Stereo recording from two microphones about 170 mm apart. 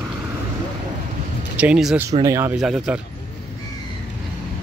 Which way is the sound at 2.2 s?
15° right (ahead or behind).